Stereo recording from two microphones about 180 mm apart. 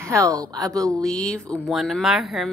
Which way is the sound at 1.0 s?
5° left (ahead or behind).